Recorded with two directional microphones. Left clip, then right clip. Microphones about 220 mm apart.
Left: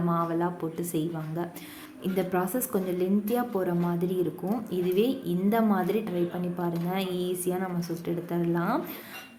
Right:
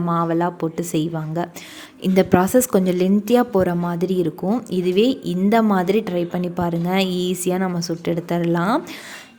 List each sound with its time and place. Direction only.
0.1 s a woman's voice: 40° right (ahead or behind)